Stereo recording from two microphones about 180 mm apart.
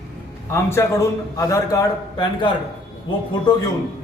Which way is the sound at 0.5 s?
15° left (ahead or behind).